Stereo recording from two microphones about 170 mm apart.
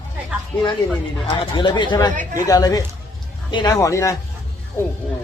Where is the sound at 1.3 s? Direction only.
30° left (ahead or behind).